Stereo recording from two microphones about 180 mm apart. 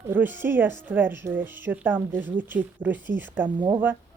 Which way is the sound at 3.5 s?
25° right (ahead or behind).